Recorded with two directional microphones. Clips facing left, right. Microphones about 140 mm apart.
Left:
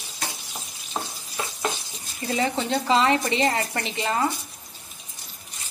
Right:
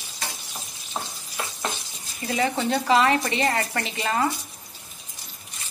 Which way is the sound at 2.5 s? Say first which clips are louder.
Right 3 dB; 25° left (ahead or behind).